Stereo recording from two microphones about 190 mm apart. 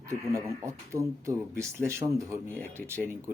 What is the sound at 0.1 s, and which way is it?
Speech, 15° right (ahead or behind).